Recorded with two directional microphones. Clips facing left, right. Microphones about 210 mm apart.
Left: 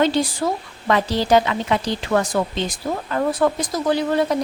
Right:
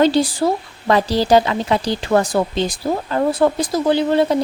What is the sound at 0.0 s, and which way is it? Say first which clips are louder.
Speech: right 4 dB; 35° right (ahead or behind).